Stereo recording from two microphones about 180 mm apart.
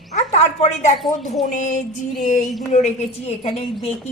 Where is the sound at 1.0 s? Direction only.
Centre (ahead or behind).